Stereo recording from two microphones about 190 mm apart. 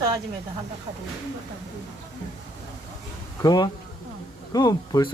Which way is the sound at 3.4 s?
20° left (ahead or behind).